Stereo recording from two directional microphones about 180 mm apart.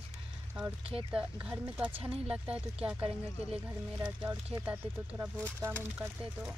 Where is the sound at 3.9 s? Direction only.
15° right (ahead or behind).